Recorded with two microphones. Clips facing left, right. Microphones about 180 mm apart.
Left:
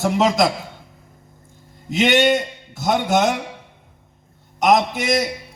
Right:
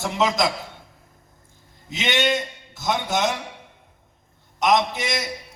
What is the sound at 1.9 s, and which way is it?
A man's voice, 55° left (ahead or behind).